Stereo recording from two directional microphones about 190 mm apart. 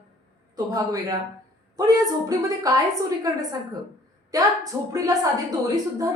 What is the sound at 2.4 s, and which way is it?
A woman's voice, 20° right (ahead or behind).